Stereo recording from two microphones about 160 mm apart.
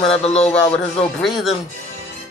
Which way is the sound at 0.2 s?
40° left (ahead or behind).